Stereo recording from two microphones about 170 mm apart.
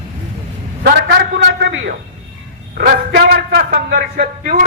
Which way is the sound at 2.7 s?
65° right (ahead or behind).